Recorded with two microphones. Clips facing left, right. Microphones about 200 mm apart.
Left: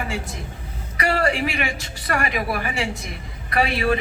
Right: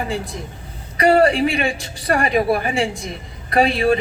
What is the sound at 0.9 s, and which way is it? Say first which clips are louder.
A woman's voice: right 8 dB; 30° right (ahead or behind).